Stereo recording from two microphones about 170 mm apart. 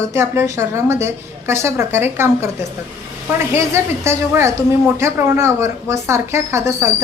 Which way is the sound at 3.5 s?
15° right (ahead or behind).